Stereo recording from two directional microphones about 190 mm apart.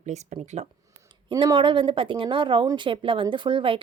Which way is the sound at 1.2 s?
25° right (ahead or behind).